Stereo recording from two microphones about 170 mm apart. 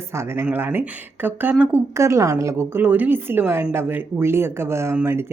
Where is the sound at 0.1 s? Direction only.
15° right (ahead or behind).